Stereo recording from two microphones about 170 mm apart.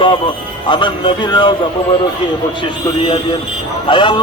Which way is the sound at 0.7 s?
30° left (ahead or behind).